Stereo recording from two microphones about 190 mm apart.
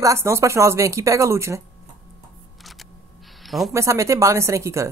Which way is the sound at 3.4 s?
Centre (ahead or behind).